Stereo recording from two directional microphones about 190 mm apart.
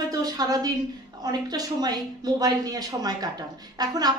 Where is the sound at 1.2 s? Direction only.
20° right (ahead or behind).